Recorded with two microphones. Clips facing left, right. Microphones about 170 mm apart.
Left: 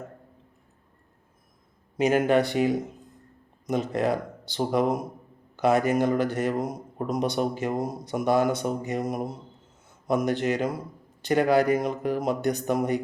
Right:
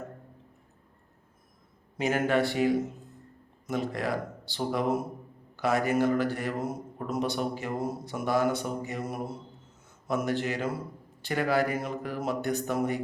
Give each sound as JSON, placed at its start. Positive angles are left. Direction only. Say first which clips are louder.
{"t": 2.0, "sound": "a man's voice", "louder": "left 5 dB", "side_deg": 15}